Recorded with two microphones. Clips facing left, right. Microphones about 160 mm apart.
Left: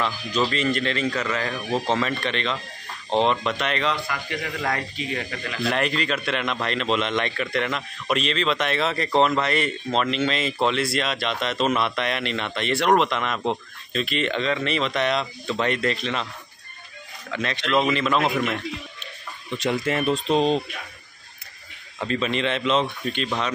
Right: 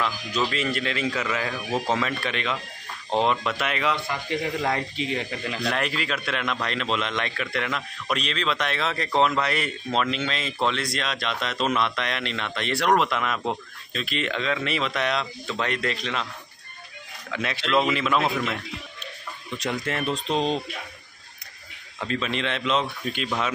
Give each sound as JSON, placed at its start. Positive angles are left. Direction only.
{"t": 0.5, "sound": "a man's voice", "side_deg": -5}
{"t": 4.1, "sound": "speech", "side_deg": -25}
{"t": 5.6, "sound": "a man's voice", "side_deg": 0}
{"t": 17.3, "sound": "a man's voice", "side_deg": -5}
{"t": 19.5, "sound": "a man's voice", "side_deg": 5}
{"t": 22.0, "sound": "a man's voice", "side_deg": 0}